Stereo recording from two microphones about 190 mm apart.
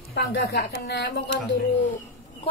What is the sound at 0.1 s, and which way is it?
A woman's voice, 60° left (ahead or behind).